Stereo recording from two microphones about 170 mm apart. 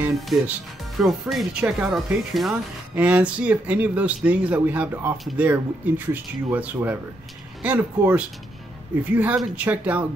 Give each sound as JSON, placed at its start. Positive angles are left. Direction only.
{"t": 0.0, "sound": "speech", "side_deg": 0}